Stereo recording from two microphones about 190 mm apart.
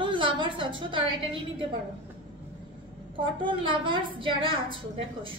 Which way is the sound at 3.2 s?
25° right (ahead or behind).